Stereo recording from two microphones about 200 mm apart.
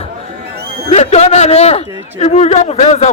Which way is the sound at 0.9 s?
35° left (ahead or behind).